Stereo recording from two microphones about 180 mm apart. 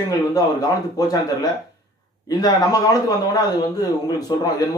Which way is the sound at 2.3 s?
20° left (ahead or behind).